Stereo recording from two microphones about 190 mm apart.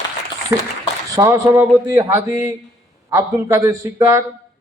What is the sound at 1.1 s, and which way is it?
A man's voice, 15° right (ahead or behind).